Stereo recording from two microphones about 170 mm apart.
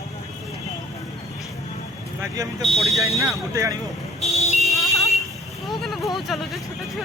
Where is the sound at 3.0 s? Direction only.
15° right (ahead or behind).